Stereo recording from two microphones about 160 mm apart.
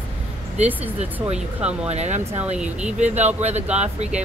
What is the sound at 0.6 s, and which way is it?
Speech, 45° right (ahead or behind).